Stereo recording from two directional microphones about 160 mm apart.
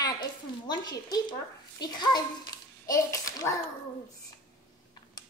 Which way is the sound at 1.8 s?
25° left (ahead or behind).